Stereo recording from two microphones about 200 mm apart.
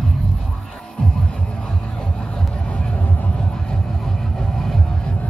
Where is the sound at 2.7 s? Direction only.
5° left (ahead or behind).